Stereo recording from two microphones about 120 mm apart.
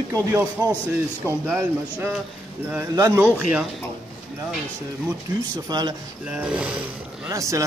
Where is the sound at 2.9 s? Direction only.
25° right (ahead or behind).